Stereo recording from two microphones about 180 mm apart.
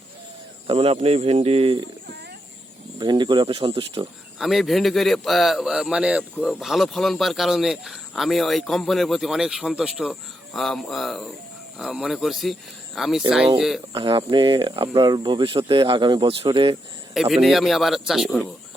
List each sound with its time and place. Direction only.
0.7 s speech: 30° right (ahead or behind)
3.0 s speech: 25° right (ahead or behind)
4.4 s speech: centre (ahead or behind)
13.9 s speech: 25° right (ahead or behind)
17.2 s speech: centre (ahead or behind)